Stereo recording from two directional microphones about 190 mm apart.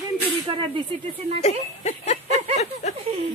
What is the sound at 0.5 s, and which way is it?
Speech, 25° right (ahead or behind).